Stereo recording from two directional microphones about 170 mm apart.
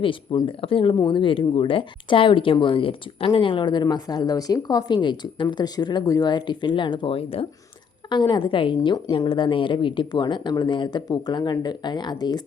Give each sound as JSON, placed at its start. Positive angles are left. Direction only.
{"t": 0.0, "sound": "speech", "side_deg": 30}